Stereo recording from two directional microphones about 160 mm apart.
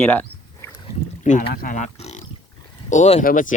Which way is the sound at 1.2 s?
55° left (ahead or behind).